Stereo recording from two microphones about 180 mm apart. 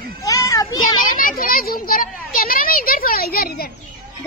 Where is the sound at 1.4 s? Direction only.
55° left (ahead or behind).